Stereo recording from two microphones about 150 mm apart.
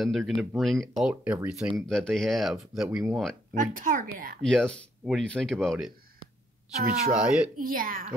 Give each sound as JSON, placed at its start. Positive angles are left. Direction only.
{"t": 0.0, "sound": "speech", "side_deg": 0}
{"t": 0.3, "sound": "speech", "side_deg": -10}
{"t": 0.6, "sound": "speech", "side_deg": 0}
{"t": 3.5, "sound": "speech", "side_deg": -65}
{"t": 4.4, "sound": "speech", "side_deg": 5}
{"t": 7.1, "sound": "speech", "side_deg": -5}
{"t": 7.5, "sound": "speech", "side_deg": -70}